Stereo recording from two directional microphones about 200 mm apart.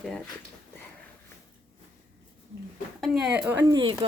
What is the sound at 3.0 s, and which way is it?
Speech, centre (ahead or behind).